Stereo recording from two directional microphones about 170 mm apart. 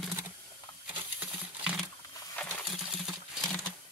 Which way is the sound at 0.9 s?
5° right (ahead or behind).